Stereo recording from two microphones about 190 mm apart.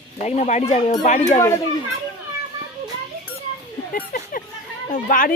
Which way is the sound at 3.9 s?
50° left (ahead or behind).